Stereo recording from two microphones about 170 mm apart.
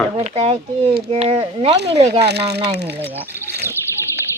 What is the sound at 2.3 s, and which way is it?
Speech, 75° right (ahead or behind).